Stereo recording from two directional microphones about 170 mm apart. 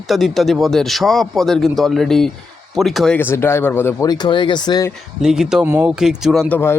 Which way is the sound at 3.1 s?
15° left (ahead or behind).